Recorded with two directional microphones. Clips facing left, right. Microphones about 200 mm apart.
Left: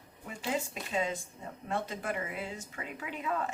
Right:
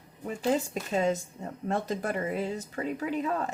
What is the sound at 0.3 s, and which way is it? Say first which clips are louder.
Speech: right 7 dB; 40° right (ahead or behind).